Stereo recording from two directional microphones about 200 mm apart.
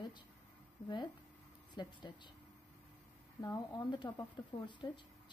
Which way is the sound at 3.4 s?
20° left (ahead or behind).